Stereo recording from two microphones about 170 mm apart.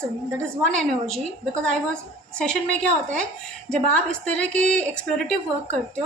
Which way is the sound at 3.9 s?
5° left (ahead or behind).